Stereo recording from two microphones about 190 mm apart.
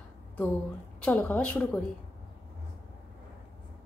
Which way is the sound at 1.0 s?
5° left (ahead or behind).